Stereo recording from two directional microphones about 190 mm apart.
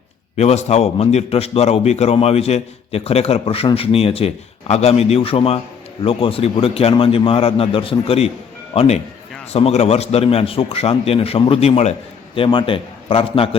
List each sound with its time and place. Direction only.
0.3 s a man's voice: 35° left (ahead or behind)